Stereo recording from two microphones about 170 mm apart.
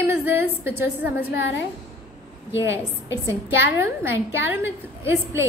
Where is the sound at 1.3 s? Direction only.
90° left.